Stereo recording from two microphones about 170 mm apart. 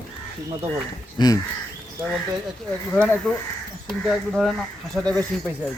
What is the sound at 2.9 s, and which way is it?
Speech, 5° left (ahead or behind).